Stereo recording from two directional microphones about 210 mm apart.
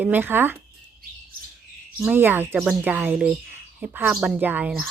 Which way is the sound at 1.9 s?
5° right (ahead or behind).